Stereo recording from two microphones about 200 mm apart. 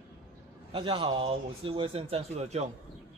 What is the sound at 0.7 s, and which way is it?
Speech, 25° right (ahead or behind).